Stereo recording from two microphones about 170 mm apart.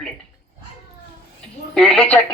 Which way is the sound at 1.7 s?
5° left (ahead or behind).